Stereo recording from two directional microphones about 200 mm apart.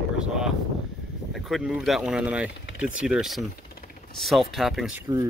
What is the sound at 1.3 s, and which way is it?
Speech, centre (ahead or behind).